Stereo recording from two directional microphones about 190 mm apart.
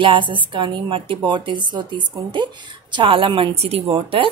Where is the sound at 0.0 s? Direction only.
25° right (ahead or behind).